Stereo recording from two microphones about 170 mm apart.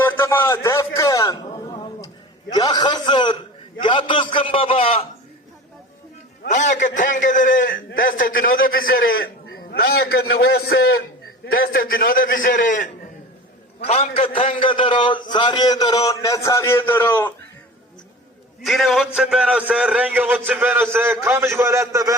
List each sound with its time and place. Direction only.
0.0 s a sound: 15° left (ahead or behind)
2.5 s a man's voice: 25° left (ahead or behind)
6.5 s a man's voice: 45° left (ahead or behind)
13.8 s a man's voice: 35° left (ahead or behind); by 17.3 s 15° left (ahead or behind)
18.6 s a man's voice: centre (ahead or behind); by 22.1 s 20° right (ahead or behind)